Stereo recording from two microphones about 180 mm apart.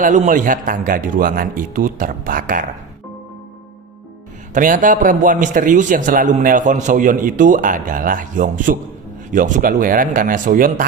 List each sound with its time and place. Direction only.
0.0 s a man's voice: 45° right (ahead or behind)
4.6 s a man's voice: 45° right (ahead or behind)